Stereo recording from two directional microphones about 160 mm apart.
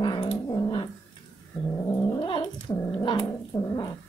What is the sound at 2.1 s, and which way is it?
Dog, 25° left (ahead or behind).